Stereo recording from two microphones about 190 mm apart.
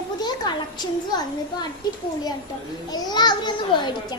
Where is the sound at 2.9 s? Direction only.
20° left (ahead or behind).